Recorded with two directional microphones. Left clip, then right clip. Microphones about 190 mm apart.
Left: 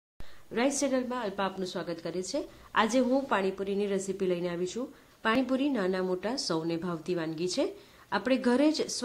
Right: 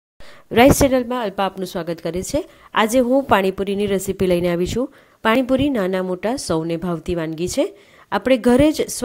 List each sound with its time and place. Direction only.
0.5 s a woman's voice: 50° right (ahead or behind)